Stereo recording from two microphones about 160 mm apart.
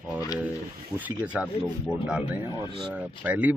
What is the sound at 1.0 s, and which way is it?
Speech, 5° right (ahead or behind).